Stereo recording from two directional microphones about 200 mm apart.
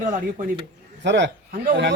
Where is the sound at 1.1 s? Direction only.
60° right (ahead or behind).